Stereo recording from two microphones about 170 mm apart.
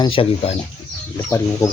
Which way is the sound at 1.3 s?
15° left (ahead or behind).